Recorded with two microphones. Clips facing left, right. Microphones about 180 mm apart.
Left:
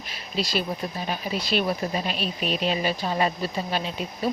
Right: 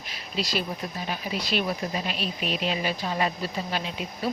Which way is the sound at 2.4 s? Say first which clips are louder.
Left 3 dB; 35° left (ahead or behind).